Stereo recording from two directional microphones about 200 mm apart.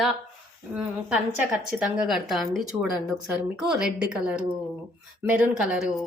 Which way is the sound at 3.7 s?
5° right (ahead or behind).